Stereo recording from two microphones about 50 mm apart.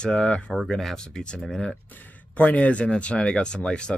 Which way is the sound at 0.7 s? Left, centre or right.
Centre.